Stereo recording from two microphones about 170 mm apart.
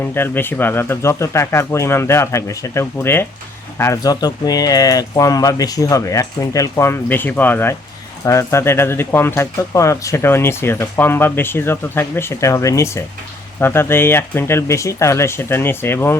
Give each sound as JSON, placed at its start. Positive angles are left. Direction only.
{"t": 0.0, "sound": "speech", "side_deg": 10}